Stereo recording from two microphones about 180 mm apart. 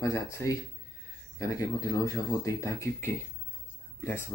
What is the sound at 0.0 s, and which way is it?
Speech, 15° left (ahead or behind).